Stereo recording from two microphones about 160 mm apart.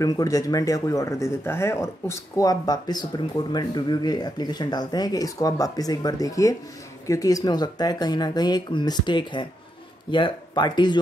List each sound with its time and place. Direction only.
0.0 s speech: 20° left (ahead or behind)